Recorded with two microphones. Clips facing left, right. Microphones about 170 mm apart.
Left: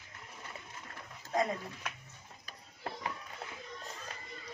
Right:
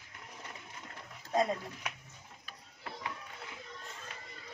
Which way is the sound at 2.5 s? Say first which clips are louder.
Left 4 dB; 40° left (ahead or behind).